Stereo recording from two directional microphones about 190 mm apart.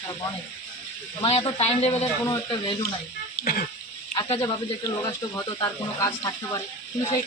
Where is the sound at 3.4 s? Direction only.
55° left (ahead or behind).